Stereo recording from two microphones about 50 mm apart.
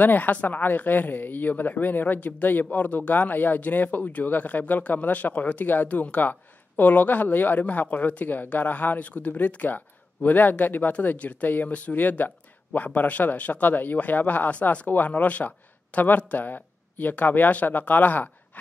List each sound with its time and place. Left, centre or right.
0.0 s speech: left